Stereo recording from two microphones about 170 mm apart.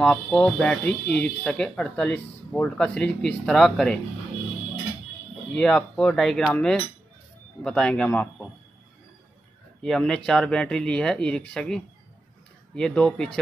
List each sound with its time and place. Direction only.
0.0 s speech: 5° left (ahead or behind)
5.5 s a man's voice: 5° left (ahead or behind)
9.8 s speech: 5° left (ahead or behind)